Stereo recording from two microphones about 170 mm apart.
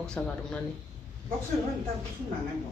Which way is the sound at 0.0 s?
5° left (ahead or behind).